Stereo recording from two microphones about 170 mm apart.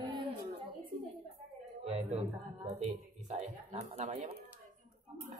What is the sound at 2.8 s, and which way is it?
Speech, 35° right (ahead or behind).